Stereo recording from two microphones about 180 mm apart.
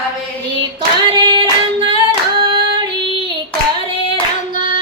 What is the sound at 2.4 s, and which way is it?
Singing, 25° right (ahead or behind).